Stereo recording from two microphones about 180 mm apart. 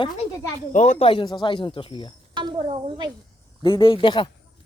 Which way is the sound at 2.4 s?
25° right (ahead or behind).